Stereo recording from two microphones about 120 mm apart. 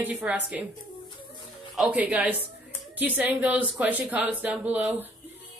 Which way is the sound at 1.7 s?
10° right (ahead or behind).